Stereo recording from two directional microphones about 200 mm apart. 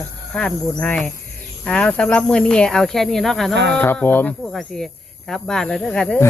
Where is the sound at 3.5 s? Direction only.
60° right (ahead or behind).